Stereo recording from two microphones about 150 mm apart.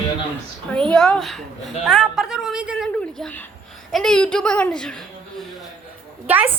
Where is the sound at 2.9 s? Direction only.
5° left (ahead or behind).